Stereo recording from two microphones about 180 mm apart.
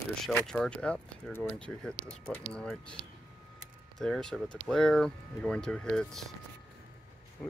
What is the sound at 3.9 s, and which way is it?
Speech, 5° left (ahead or behind).